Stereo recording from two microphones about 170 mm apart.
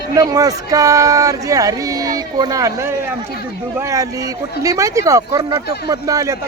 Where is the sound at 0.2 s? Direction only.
20° right (ahead or behind).